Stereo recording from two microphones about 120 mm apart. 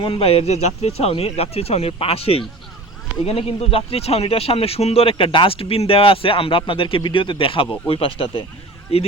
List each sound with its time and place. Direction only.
0.0 s speech: 50° left (ahead or behind)